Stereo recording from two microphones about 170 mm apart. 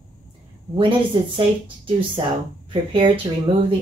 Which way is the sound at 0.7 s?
30° right (ahead or behind).